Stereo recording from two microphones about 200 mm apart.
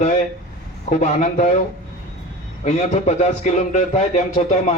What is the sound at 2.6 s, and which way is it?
A man's voice, 35° left (ahead or behind).